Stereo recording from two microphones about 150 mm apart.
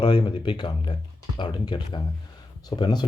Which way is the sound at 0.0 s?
35° left (ahead or behind).